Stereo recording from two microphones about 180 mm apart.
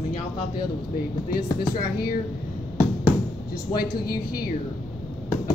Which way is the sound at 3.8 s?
55° left (ahead or behind).